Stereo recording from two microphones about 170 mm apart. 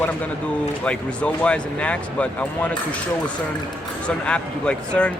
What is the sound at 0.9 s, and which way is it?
Speech, 5° left (ahead or behind).